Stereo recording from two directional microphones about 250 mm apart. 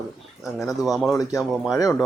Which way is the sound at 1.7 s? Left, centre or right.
Centre.